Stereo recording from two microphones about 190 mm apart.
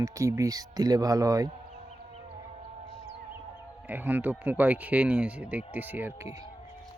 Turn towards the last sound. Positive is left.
turn(degrees=-10)  # may be behind; listen again after turning